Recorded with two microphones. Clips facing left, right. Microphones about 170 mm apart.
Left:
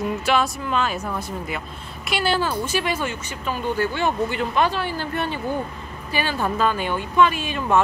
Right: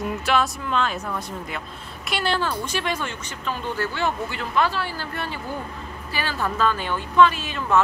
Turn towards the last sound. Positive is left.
turn(degrees=15)  # may be behind; listen again after turning